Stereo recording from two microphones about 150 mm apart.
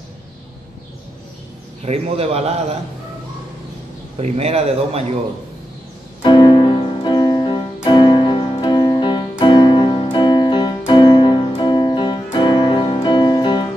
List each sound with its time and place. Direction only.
1.9 s a man's voice: 45° right (ahead or behind)
4.2 s a man's voice: 45° right (ahead or behind)
6.2 s music: 30° left (ahead or behind)